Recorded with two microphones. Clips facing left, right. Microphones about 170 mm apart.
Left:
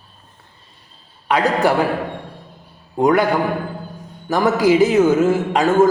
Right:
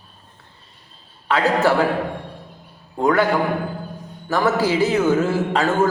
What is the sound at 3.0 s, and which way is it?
Speech, 15° left (ahead or behind).